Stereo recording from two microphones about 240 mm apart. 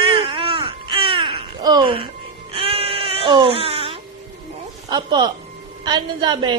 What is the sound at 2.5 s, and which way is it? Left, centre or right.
Music, right.